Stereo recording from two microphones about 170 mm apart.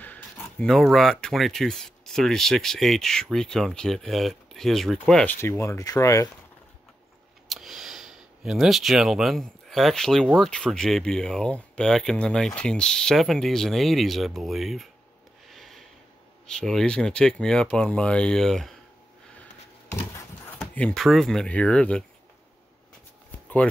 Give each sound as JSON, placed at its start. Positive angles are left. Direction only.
{"t": 0.0, "sound": "speech", "side_deg": 10}
{"t": 5.4, "sound": "speech", "side_deg": 15}
{"t": 7.4, "sound": "a sound", "side_deg": 0}
{"t": 10.2, "sound": "speech", "side_deg": -10}
{"t": 10.5, "sound": "speech", "side_deg": 5}
{"t": 15.4, "sound": "a sound", "side_deg": 0}
{"t": 16.4, "sound": "speech", "side_deg": 5}
{"t": 19.9, "sound": "a sound", "side_deg": 15}
{"t": 20.5, "sound": "speech", "side_deg": 5}